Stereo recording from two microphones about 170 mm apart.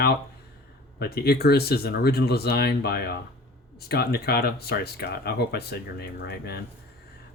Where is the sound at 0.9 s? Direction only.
70° left (ahead or behind).